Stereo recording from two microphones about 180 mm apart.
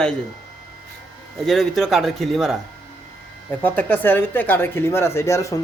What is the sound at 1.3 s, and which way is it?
A man's voice, centre (ahead or behind).